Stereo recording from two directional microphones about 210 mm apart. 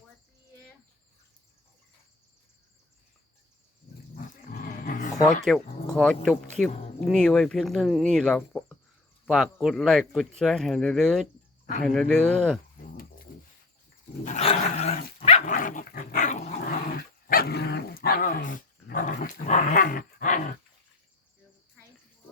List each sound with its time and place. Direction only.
4.8 s roaring cats: 40° left (ahead or behind)
5.1 s speech: centre (ahead or behind)
14.3 s dog: 30° left (ahead or behind)
17.2 s dog: 50° left (ahead or behind)